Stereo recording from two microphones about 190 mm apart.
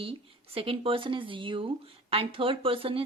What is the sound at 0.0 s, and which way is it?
Speech, 30° right (ahead or behind).